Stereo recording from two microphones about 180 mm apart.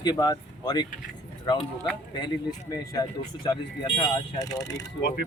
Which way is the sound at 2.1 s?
20° left (ahead or behind).